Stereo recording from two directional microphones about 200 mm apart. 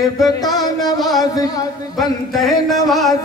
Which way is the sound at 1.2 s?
20° left (ahead or behind).